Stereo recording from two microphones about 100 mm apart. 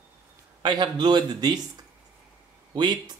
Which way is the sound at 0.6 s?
45° right (ahead or behind).